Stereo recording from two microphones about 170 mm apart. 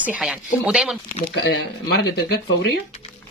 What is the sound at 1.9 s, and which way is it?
Speech, 70° left (ahead or behind).